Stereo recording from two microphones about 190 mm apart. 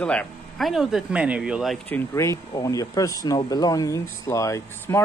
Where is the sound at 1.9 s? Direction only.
10° left (ahead or behind).